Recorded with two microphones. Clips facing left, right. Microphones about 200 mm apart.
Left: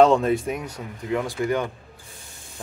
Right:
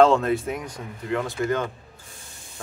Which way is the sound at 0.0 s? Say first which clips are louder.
Left 1 dB; 15° left (ahead or behind).